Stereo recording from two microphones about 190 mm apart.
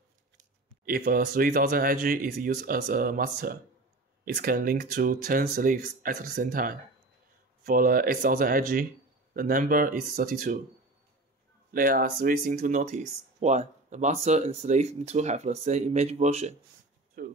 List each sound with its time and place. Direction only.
0.8 s speech: 50° right (ahead or behind)
11.7 s speech: 45° right (ahead or behind)
17.2 s speech: 50° right (ahead or behind)